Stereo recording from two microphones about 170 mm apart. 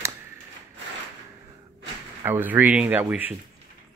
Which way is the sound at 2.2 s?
10° right (ahead or behind).